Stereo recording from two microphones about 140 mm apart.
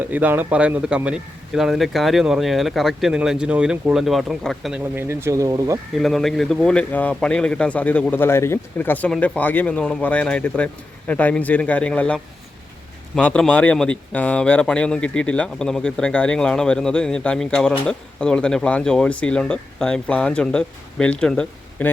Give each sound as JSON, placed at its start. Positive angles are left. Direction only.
{"t": 0.0, "sound": "a man's voice", "side_deg": -10}
{"t": 4.9, "sound": "speech", "side_deg": -20}
{"t": 5.9, "sound": "speech", "side_deg": 0}